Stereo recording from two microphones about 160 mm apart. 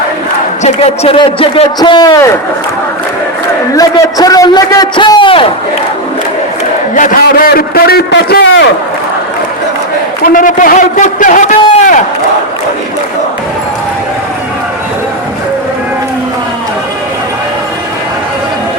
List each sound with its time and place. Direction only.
0.6 s a man's voice: 40° left (ahead or behind); by 2.3 s 25° left (ahead or behind)
3.8 s a man's voice: 20° left (ahead or behind)
6.9 s a man's voice: 55° left (ahead or behind); by 8.6 s 85° left
10.2 s a man's voice: 55° left (ahead or behind)